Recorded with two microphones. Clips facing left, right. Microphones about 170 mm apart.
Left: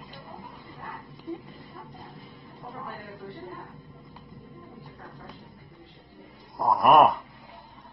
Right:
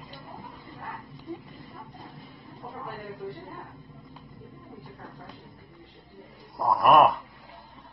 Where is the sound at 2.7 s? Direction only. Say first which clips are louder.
Right 2 dB; centre (ahead or behind).